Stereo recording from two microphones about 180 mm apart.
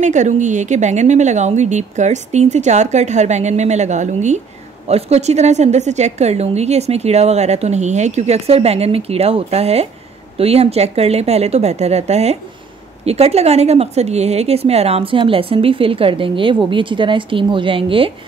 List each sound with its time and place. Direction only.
0.0 s speech: 40° right (ahead or behind)